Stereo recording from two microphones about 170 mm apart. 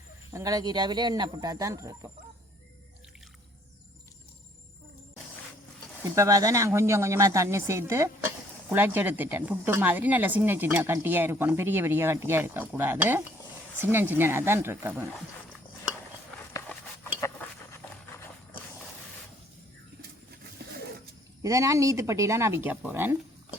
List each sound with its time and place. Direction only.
0.3 s speech: 20° right (ahead or behind)
6.0 s speech: 20° right (ahead or behind)
16.5 s a sound: 20° left (ahead or behind)
20.6 s pigeon: 60° right (ahead or behind)
21.4 s speech: 20° right (ahead or behind)